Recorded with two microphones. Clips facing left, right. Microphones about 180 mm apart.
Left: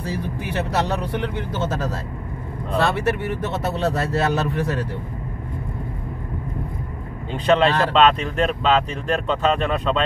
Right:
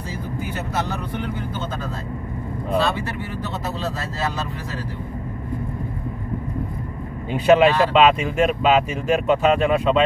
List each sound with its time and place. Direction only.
0.1 s speech: 75° left (ahead or behind)
2.8 s speech: 70° left (ahead or behind)
7.3 s speech: 10° right (ahead or behind)